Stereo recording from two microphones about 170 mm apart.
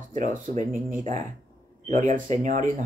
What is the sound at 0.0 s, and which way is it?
Speech, 50° right (ahead or behind).